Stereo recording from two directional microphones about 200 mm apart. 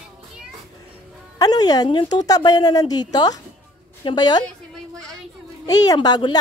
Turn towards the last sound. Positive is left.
turn(degrees=20)  # may be behind; listen again after turning